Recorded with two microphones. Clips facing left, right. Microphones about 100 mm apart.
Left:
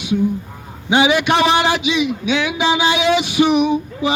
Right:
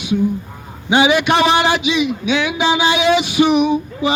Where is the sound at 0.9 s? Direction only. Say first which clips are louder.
Right 1 dB; 65° right (ahead or behind).